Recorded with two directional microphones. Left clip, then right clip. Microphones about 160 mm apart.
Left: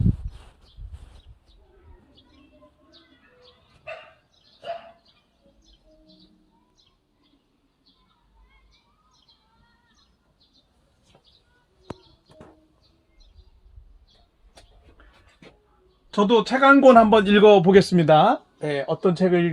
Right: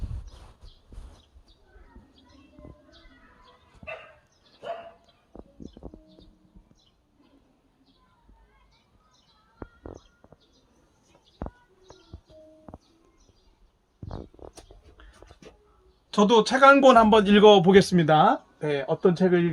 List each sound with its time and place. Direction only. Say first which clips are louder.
16.1 s speech: left 1 dB; 55° left (ahead or behind); by 19.5 s 30° left (ahead or behind)